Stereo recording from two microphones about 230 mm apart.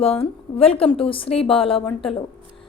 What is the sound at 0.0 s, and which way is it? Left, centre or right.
A woman's voice, left.